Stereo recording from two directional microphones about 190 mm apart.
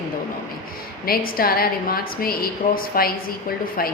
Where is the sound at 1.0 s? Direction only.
50° left (ahead or behind).